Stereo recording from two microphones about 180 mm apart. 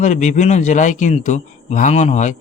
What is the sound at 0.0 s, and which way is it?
A man's voice, 40° left (ahead or behind).